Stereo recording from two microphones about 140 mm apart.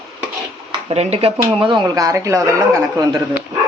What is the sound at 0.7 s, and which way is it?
Speech, 45° right (ahead or behind).